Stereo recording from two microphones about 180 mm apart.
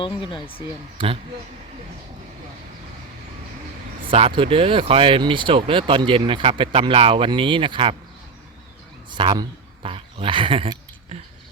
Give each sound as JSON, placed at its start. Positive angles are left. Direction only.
{"t": 0.0, "sound": "speech", "side_deg": 25}
{"t": 0.9, "sound": "speech", "side_deg": -30}
{"t": 4.4, "sound": "speech", "side_deg": -30}
{"t": 9.0, "sound": "a sound", "side_deg": -25}